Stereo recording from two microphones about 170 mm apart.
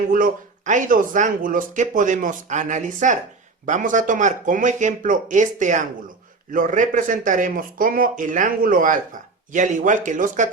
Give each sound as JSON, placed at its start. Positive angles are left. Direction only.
{"t": 0.1, "sound": "speech", "side_deg": -50}